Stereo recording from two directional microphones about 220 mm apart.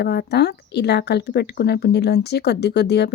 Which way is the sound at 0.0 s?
45° left (ahead or behind).